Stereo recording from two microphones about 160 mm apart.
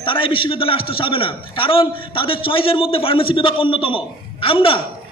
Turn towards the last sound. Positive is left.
turn(degrees=35)  # may be behind; listen again after turning